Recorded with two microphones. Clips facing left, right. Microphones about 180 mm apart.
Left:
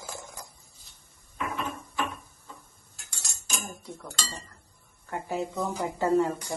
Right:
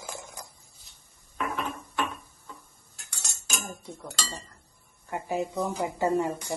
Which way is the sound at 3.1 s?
65° right (ahead or behind).